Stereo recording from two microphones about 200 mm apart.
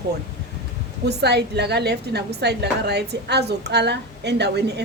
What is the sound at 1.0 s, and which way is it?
A woman's voice, 55° right (ahead or behind).